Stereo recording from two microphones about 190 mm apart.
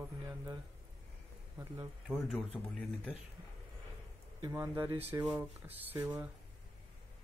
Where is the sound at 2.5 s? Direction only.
10° left (ahead or behind).